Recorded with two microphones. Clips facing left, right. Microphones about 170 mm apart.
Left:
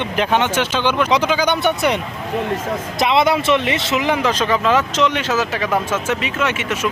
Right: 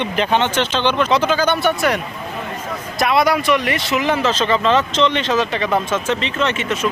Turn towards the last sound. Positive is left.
turn(degrees=10)  # may be behind; listen again after turning